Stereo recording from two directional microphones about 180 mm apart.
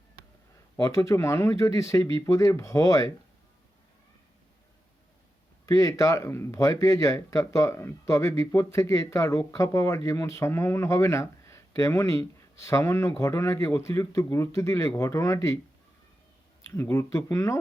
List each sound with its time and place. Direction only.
0.8 s speech: 15° left (ahead or behind)
5.6 s speech: 20° left (ahead or behind)
16.8 s speech: 15° left (ahead or behind)